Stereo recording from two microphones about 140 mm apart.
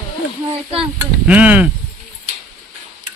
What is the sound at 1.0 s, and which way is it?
Speech, 10° right (ahead or behind).